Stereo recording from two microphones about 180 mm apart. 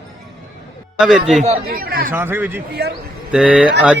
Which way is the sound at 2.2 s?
10° right (ahead or behind).